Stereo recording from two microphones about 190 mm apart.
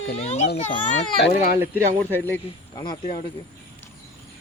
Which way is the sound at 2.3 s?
20° left (ahead or behind).